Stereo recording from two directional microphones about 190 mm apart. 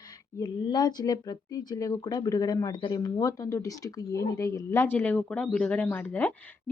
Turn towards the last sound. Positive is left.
turn(degrees=10)  # may be behind; listen again after turning